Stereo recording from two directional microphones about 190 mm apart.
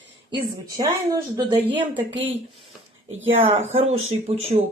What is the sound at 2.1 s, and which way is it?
Speech, 90° right.